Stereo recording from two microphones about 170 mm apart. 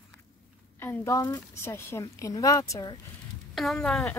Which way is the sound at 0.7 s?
15° left (ahead or behind).